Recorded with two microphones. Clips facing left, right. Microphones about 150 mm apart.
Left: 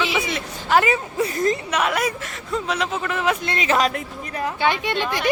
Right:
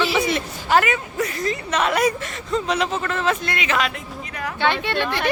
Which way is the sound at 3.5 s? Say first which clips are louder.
Left 3 dB; 35° left (ahead or behind).